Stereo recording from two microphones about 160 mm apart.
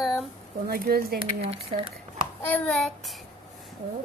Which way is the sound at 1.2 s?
40° right (ahead or behind).